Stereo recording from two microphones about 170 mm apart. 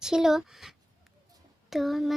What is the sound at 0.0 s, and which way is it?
Speech, 5° right (ahead or behind).